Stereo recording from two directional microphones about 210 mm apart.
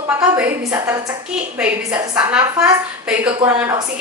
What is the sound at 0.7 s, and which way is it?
A woman's voice, 15° right (ahead or behind).